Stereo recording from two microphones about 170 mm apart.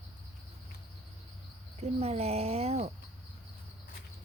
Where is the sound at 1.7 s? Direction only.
40° right (ahead or behind).